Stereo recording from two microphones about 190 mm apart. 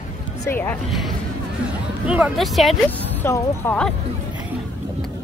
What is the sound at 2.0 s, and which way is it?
Speech, 5° right (ahead or behind).